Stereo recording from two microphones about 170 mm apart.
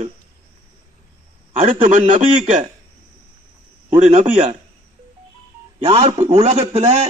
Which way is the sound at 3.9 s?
35° right (ahead or behind).